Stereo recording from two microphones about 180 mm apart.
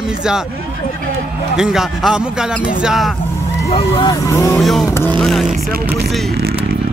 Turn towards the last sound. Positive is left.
turn(degrees=0)  # may be behind; listen again after turning